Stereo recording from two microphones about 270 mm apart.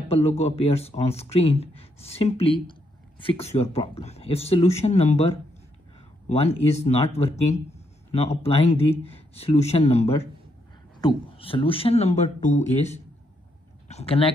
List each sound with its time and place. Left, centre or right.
0.1 s speech: left